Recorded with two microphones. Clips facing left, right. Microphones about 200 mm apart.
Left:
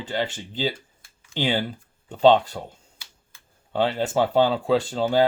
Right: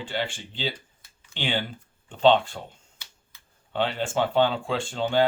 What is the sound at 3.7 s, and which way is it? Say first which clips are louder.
Speech: left 4 dB; 40° left (ahead or behind).